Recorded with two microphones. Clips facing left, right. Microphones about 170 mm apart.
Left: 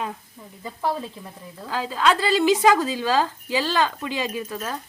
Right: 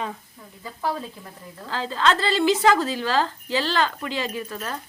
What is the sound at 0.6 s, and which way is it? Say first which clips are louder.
Speech: left 2 dB; 20° left (ahead or behind).